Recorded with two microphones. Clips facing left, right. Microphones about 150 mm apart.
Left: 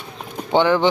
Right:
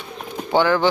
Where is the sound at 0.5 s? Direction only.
20° left (ahead or behind).